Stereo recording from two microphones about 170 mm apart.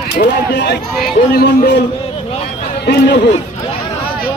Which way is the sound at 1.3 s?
70° left (ahead or behind).